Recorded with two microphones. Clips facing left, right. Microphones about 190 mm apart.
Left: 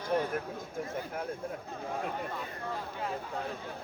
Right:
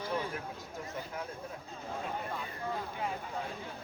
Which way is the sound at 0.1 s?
55° left (ahead or behind).